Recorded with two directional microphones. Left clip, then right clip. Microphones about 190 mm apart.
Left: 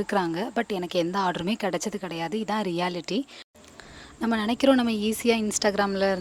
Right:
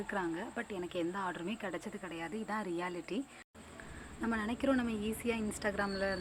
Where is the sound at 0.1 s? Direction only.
55° left (ahead or behind).